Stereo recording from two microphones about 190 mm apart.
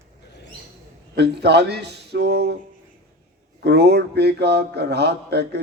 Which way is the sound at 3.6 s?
60° right (ahead or behind).